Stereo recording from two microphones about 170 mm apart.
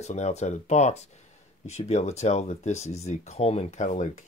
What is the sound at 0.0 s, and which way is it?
Speech, 40° left (ahead or behind).